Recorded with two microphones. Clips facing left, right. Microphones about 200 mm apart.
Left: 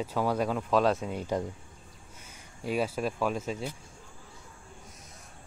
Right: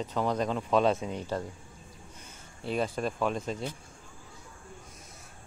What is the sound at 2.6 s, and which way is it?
Speech, 5° left (ahead or behind).